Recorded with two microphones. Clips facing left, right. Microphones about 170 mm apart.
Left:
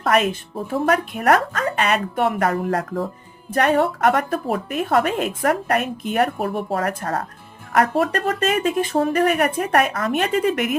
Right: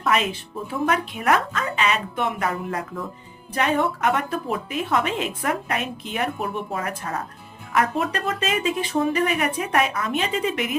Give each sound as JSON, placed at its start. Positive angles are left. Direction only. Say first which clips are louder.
{"t": 0.1, "sound": "a woman's voice", "louder": "left 4 dB", "side_deg": 50}